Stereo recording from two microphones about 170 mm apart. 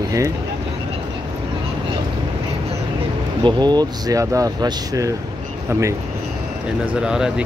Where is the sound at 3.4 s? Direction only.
25° right (ahead or behind).